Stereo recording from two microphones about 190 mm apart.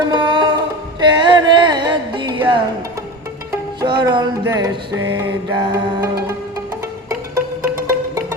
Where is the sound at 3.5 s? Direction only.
20° right (ahead or behind).